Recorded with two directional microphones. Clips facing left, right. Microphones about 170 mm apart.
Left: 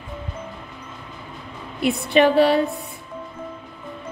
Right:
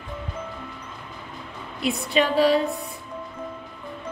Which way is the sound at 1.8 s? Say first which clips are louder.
Left 5 dB; 60° left (ahead or behind).